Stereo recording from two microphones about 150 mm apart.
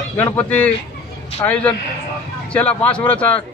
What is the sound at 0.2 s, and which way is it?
Speech, 10° left (ahead or behind).